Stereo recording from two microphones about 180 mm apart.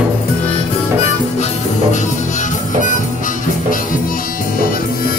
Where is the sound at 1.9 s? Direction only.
45° left (ahead or behind).